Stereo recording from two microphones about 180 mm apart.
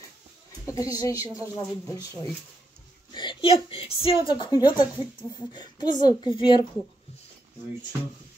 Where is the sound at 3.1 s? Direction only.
30° left (ahead or behind).